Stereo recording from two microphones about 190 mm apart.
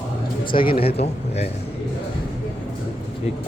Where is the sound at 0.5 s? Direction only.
25° left (ahead or behind).